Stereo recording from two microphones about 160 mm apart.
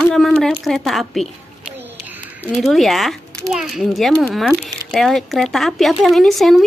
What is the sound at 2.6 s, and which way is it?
Speech, centre (ahead or behind).